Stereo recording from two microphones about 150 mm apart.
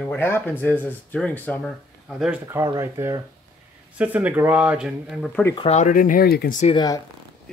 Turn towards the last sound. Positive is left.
turn(degrees=25)  # may be behind; listen again after turning